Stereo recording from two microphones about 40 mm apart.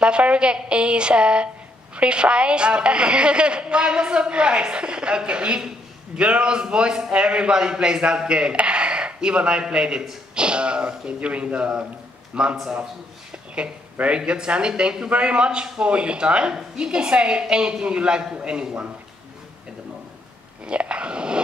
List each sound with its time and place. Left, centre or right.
0.0 s a woman's voice: right
13.9 s a woman's voice: right
20.6 s a sound: right